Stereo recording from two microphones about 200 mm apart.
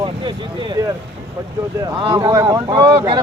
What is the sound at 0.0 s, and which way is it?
Speech, 25° right (ahead or behind).